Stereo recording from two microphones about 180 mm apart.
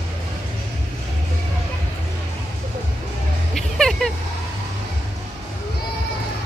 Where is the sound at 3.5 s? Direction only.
5° left (ahead or behind).